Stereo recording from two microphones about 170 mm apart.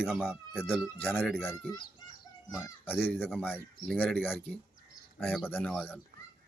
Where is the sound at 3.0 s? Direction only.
10° left (ahead or behind).